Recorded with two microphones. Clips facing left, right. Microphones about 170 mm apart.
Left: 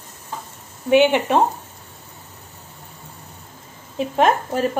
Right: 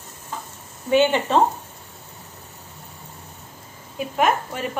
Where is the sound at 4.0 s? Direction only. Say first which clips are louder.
Left 3 dB; 30° left (ahead or behind).